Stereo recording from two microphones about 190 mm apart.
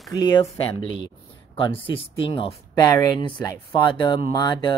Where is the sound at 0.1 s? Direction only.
20° left (ahead or behind).